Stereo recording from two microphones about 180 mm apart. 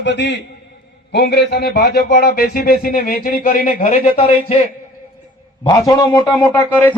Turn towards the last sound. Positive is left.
turn(degrees=15)  # may be behind; listen again after turning